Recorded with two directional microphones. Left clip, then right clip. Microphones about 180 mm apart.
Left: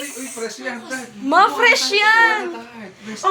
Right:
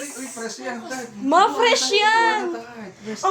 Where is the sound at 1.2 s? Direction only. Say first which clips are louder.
Left 3 dB; 20° right (ahead or behind).